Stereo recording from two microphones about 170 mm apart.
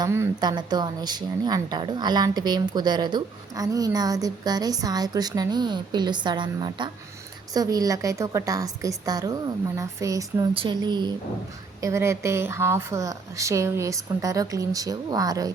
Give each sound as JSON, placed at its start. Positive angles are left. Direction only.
{"t": 0.0, "sound": "speech", "side_deg": -20}